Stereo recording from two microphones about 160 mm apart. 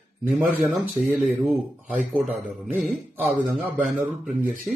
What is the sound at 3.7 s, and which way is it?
Speech, centre (ahead or behind).